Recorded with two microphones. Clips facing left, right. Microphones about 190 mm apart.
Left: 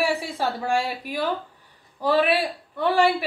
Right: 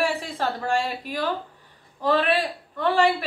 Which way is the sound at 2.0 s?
10° left (ahead or behind).